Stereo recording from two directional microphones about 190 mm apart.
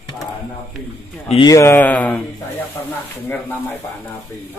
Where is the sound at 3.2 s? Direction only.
10° left (ahead or behind).